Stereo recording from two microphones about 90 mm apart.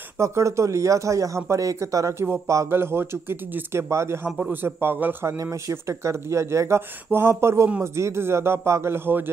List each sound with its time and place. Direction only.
0.2 s speech: 35° right (ahead or behind)
5.2 s speech: 35° right (ahead or behind)